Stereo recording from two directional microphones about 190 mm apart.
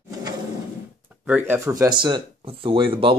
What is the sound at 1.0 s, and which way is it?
Speech, 10° right (ahead or behind).